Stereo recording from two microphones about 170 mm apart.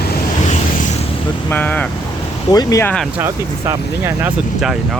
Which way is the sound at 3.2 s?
15° right (ahead or behind).